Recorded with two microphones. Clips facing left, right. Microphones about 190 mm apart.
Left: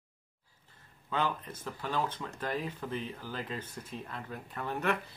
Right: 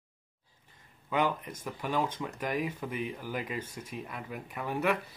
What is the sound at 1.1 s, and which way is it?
Speech, 15° right (ahead or behind).